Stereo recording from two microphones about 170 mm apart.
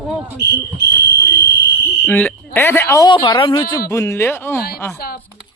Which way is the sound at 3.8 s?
15° left (ahead or behind).